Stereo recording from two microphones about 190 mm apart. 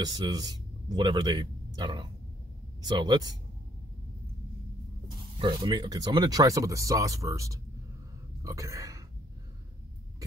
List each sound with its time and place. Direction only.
0.0 s speech: 20° right (ahead or behind)
5.0 s speech: 25° right (ahead or behind)